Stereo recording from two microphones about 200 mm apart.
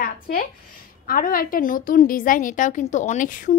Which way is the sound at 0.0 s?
45° left (ahead or behind).